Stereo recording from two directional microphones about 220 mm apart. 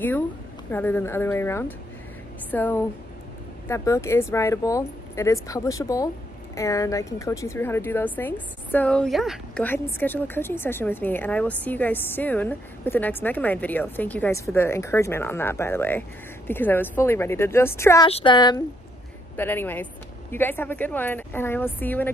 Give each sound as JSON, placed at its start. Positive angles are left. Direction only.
{"t": 0.7, "sound": "a woman's voice", "side_deg": 10}
{"t": 18.0, "sound": "speech", "side_deg": 25}
{"t": 19.3, "sound": "a woman's voice", "side_deg": 10}